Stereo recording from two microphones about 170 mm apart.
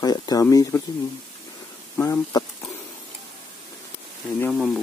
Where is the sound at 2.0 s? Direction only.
20° left (ahead or behind).